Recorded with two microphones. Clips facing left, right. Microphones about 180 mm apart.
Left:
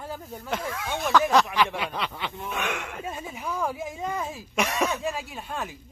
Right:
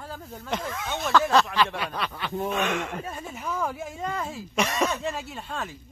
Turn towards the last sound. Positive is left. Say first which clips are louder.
# even
turn(degrees=10)  # may be behind; listen again after turning